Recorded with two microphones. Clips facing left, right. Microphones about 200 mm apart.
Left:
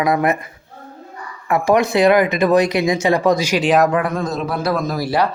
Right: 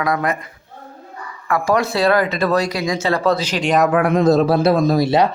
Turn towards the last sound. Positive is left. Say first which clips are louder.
# right 4 dB
turn(degrees=-20)  # may be behind; listen again after turning